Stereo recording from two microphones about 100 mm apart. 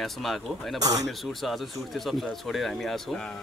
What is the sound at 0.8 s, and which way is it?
Speech, 35° right (ahead or behind).